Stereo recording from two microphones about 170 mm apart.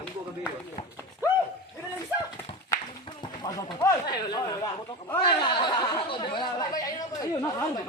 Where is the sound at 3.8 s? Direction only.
25° left (ahead or behind).